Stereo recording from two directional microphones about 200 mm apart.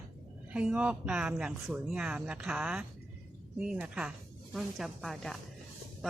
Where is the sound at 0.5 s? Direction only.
5° right (ahead or behind).